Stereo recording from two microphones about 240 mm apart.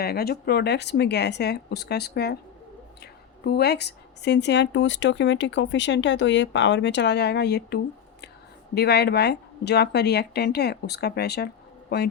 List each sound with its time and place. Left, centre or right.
0.0 s a woman's voice: left